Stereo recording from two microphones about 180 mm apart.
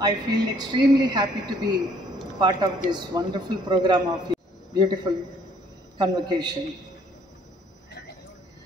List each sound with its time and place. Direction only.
0.0 s speech: 25° right (ahead or behind)